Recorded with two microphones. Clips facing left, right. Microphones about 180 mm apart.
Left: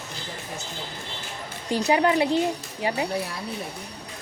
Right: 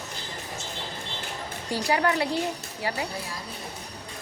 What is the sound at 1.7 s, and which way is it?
A woman's voice, 20° left (ahead or behind).